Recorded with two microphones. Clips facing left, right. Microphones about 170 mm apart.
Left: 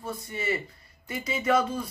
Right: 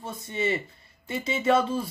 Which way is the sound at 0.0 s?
25° right (ahead or behind).